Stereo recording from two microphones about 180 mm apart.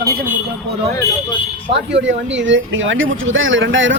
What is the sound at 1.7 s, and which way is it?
Speech, 85° right.